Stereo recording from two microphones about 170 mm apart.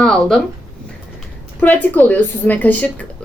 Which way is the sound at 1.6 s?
10° left (ahead or behind).